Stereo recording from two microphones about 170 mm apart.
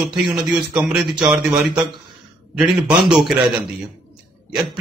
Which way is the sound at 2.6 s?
5° right (ahead or behind).